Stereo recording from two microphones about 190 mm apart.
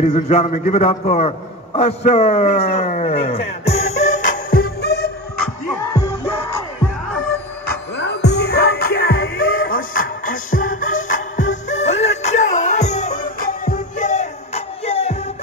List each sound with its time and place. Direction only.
0.0 s a man's voice: 35° left (ahead or behind); by 5.1 s 60° left (ahead or behind)
5.8 s music: 15° left (ahead or behind)
8.0 s music: 65° left (ahead or behind); by 15.1 s 35° left (ahead or behind)